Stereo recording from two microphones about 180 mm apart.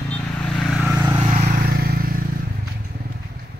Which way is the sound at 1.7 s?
55° right (ahead or behind).